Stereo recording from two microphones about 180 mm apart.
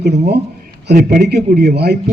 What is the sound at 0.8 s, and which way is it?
Speech, 50° right (ahead or behind).